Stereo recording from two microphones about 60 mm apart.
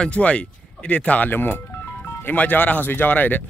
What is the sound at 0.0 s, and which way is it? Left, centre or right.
A man's voice, centre.